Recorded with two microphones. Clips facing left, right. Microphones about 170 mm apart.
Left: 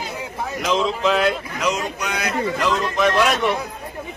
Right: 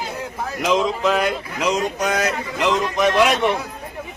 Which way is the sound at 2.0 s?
40° right (ahead or behind).